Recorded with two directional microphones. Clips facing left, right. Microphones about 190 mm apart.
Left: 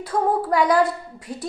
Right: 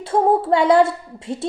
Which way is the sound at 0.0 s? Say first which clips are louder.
Right 5 dB; 25° right (ahead or behind).